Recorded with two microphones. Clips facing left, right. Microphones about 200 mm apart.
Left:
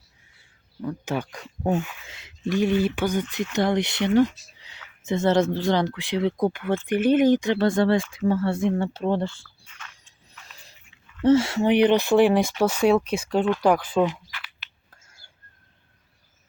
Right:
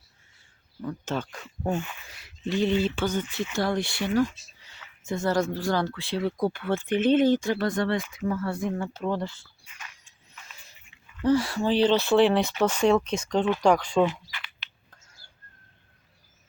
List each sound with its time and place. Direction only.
0.8 s speech: 10° left (ahead or behind)
1.4 s speech: centre (ahead or behind)
2.1 s a sound: 20° left (ahead or behind)
2.8 s speech: 15° left (ahead or behind)
9.7 s biting: 10° right (ahead or behind)
11.2 s speech: 25° left (ahead or behind); by 14.1 s 5° left (ahead or behind)